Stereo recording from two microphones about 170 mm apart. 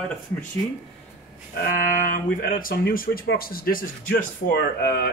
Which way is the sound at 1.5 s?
55° left (ahead or behind).